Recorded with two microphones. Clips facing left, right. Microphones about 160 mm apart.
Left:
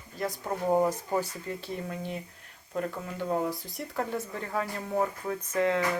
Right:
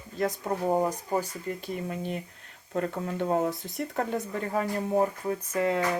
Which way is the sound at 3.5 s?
20° right (ahead or behind).